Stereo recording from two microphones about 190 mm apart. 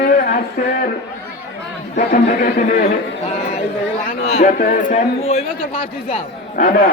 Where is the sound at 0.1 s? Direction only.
45° left (ahead or behind).